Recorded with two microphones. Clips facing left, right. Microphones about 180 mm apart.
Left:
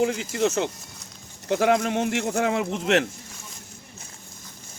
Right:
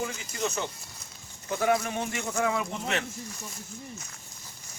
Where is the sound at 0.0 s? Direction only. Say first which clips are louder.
Left 9 dB; 75° left (ahead or behind); by 0.7 s 90° left.